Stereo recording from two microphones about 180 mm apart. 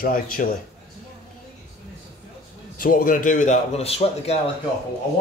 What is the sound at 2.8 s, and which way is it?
A man's voice, 50° left (ahead or behind).